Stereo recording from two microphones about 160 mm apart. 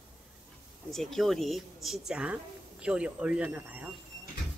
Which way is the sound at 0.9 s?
Centre (ahead or behind).